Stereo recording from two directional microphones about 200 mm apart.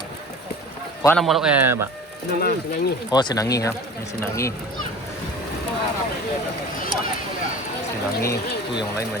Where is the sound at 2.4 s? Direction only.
50° left (ahead or behind).